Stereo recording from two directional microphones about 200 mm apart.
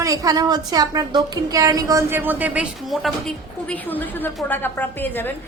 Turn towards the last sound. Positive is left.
turn(degrees=10)  # may be behind; listen again after turning